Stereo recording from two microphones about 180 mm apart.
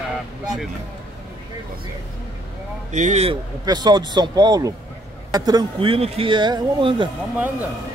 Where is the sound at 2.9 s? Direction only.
40° right (ahead or behind).